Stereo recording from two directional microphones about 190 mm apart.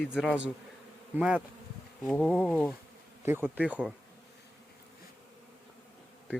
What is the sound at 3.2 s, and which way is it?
Speech, 10° right (ahead or behind).